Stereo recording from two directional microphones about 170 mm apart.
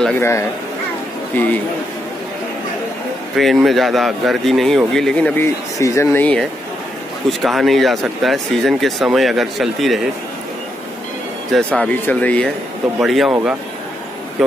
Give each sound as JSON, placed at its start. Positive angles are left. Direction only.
{"t": 0.2, "sound": "speech", "side_deg": 15}
{"t": 3.3, "sound": "speech", "side_deg": 0}
{"t": 5.8, "sound": "speech", "side_deg": 15}
{"t": 7.4, "sound": "speech", "side_deg": 0}
{"t": 11.5, "sound": "speech", "side_deg": 5}